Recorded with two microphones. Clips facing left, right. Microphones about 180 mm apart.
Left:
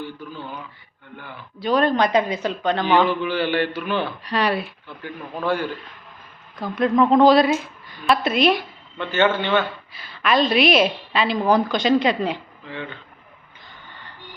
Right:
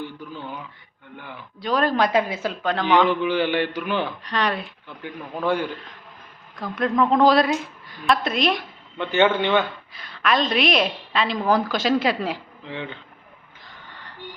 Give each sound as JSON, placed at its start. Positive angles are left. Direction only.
{"t": 0.0, "sound": "speech", "side_deg": -15}
{"t": 1.5, "sound": "a woman's voice", "side_deg": 0}
{"t": 3.1, "sound": "a man's voice", "side_deg": -15}
{"t": 4.2, "sound": "speech", "side_deg": 10}
{"t": 5.0, "sound": "a man's voice", "side_deg": -15}
{"t": 6.6, "sound": "a woman's voice", "side_deg": 0}
{"t": 9.0, "sound": "a man's voice", "side_deg": -15}
{"t": 9.9, "sound": "a woman's voice", "side_deg": 0}
{"t": 12.6, "sound": "speech", "side_deg": -20}
{"t": 13.7, "sound": "gasp", "side_deg": 0}